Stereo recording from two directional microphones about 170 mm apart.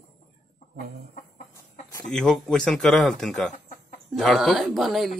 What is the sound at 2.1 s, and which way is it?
Speech, 5° left (ahead or behind).